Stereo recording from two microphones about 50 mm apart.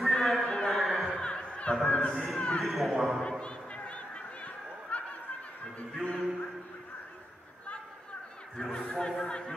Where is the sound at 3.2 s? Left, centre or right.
Centre.